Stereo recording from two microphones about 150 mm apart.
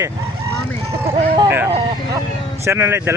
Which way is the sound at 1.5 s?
15° right (ahead or behind).